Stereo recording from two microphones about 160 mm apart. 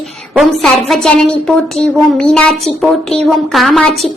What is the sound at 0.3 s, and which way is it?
Speech, centre (ahead or behind).